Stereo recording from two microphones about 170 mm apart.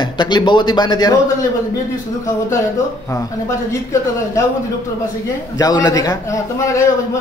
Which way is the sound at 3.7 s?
20° left (ahead or behind).